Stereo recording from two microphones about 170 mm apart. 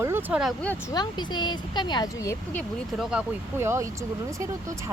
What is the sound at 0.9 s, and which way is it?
Speech, 25° left (ahead or behind).